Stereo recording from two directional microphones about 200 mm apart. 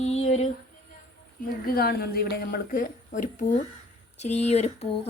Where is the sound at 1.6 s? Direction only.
50° left (ahead or behind).